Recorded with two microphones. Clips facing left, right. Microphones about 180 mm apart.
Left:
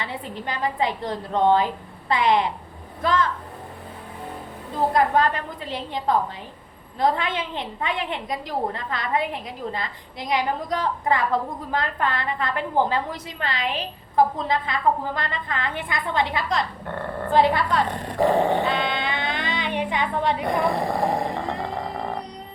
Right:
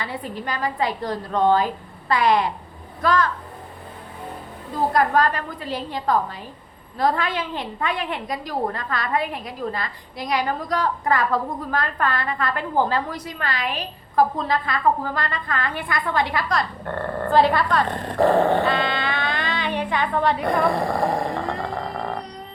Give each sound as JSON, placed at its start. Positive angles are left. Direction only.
{"t": 0.0, "sound": "a woman's voice", "side_deg": 20}
{"t": 4.9, "sound": "a woman's voice", "side_deg": 20}